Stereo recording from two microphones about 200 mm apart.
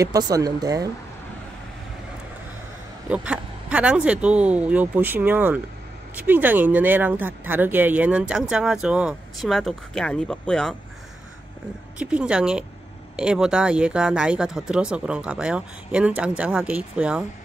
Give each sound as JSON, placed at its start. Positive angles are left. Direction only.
{"t": 0.0, "sound": "speech", "side_deg": -15}
{"t": 3.1, "sound": "speech", "side_deg": -5}
{"t": 12.0, "sound": "speech", "side_deg": -5}